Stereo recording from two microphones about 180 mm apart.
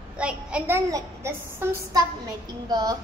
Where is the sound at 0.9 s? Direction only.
15° right (ahead or behind).